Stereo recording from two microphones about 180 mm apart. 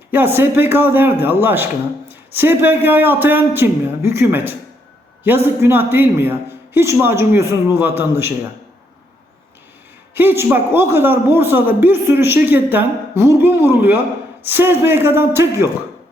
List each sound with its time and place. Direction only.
0.1 s a man's voice: 10° right (ahead or behind)
10.2 s a man's voice: 10° right (ahead or behind)